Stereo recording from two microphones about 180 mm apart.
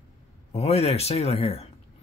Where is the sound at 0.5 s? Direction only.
35° left (ahead or behind).